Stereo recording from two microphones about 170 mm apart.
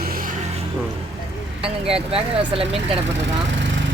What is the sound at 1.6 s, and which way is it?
Speech, 35° right (ahead or behind).